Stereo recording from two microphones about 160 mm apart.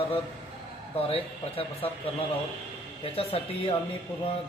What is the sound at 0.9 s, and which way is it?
Speech, 35° left (ahead or behind).